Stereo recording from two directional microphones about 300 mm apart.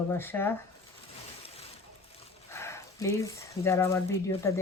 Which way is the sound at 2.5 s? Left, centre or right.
Centre.